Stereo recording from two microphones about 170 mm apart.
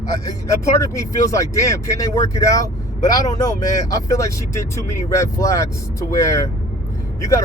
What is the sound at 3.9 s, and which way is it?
Speech, 20° left (ahead or behind).